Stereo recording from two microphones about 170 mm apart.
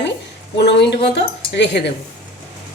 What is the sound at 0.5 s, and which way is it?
Speech, 80° left.